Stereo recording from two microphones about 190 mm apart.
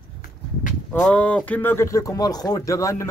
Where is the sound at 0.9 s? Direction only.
5° left (ahead or behind).